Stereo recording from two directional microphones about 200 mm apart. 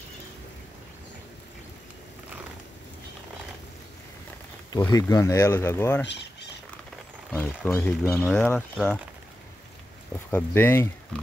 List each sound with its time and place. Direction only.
4.9 s speech: 15° left (ahead or behind)
7.3 s speech: 5° left (ahead or behind)
10.3 s speech: 10° left (ahead or behind)